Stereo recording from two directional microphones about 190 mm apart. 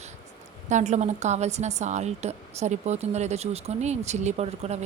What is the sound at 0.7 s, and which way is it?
A woman's voice, 40° right (ahead or behind).